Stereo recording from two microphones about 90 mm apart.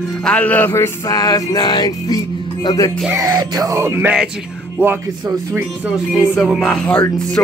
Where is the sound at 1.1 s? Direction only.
45° left (ahead or behind).